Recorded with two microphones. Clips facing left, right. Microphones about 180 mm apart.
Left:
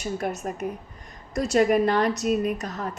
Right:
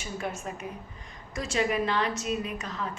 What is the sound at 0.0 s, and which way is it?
A woman's voice, 40° left (ahead or behind).